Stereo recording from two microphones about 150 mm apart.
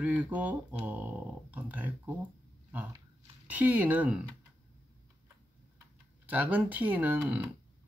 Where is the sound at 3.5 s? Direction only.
10° right (ahead or behind).